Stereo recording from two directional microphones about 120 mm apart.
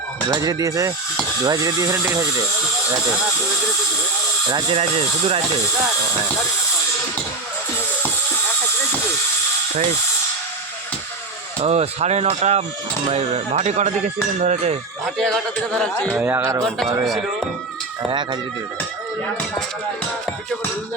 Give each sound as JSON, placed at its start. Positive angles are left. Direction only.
{"t": 0.3, "sound": "speech", "side_deg": -30}
{"t": 4.7, "sound": "speech", "side_deg": -55}
{"t": 11.6, "sound": "speech", "side_deg": -60}
{"t": 15.0, "sound": "a man's voice", "side_deg": 0}
{"t": 16.1, "sound": "speech", "side_deg": -20}
{"t": 16.6, "sound": "a man's voice", "side_deg": 0}
{"t": 18.1, "sound": "speech", "side_deg": -40}